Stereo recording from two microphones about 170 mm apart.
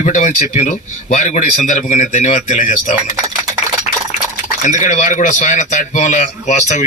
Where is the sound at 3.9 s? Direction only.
40° left (ahead or behind).